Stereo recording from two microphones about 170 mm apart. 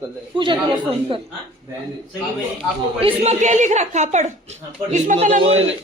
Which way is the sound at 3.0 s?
35° right (ahead or behind).